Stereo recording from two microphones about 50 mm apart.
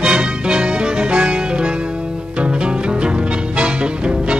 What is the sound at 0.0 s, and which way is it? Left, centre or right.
Music, centre.